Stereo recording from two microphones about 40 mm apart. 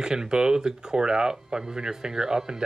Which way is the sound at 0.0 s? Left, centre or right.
Centre.